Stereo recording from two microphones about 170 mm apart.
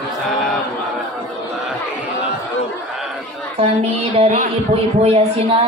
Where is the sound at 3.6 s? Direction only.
35° right (ahead or behind).